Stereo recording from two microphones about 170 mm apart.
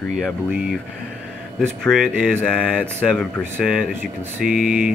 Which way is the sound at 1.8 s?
Centre (ahead or behind).